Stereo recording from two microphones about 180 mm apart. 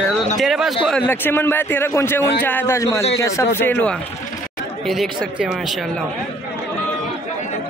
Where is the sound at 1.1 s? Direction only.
10° left (ahead or behind).